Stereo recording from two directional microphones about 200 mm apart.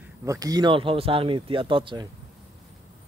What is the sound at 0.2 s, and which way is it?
Speech, 15° right (ahead or behind).